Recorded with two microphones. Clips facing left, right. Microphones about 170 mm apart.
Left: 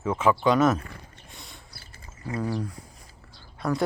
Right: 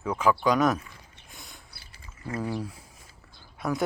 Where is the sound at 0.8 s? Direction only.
60° left (ahead or behind).